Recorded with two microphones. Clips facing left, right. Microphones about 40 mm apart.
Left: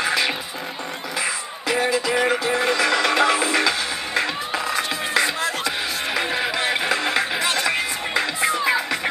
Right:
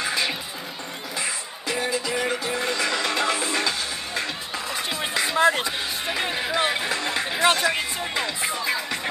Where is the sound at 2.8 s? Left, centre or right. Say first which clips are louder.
Left 5 dB; centre.